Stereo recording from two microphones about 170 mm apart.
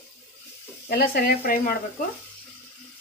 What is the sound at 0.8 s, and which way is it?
Speech, 65° left (ahead or behind).